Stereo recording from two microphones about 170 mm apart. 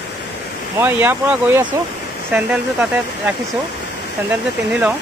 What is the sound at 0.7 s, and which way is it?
Speech, 10° right (ahead or behind).